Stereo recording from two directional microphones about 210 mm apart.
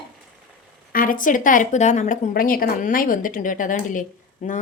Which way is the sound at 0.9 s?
40° left (ahead or behind).